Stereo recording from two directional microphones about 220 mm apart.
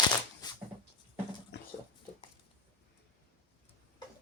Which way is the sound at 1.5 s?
50° left (ahead or behind).